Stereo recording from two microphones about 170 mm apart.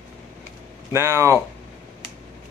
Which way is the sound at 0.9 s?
15° right (ahead or behind).